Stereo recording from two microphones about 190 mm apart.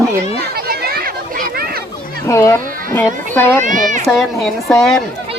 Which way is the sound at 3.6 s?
45° right (ahead or behind).